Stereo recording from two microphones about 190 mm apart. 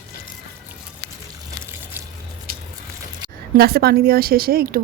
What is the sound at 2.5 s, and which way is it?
Biting, 50° right (ahead or behind).